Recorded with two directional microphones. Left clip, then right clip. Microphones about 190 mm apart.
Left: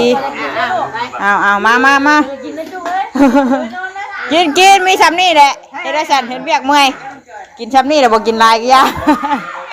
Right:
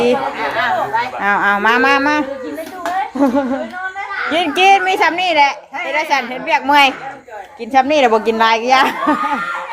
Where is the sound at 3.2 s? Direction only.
30° left (ahead or behind).